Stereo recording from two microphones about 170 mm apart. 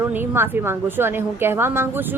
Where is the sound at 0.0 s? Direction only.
10° right (ahead or behind).